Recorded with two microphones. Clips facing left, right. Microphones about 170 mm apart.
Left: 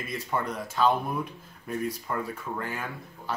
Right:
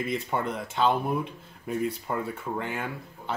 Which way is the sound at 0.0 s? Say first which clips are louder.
Right 3 dB; 25° right (ahead or behind).